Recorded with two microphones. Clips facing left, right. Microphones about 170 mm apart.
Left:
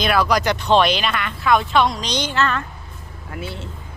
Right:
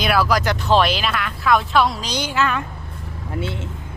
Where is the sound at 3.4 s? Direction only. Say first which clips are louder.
Right 3 dB; 20° right (ahead or behind).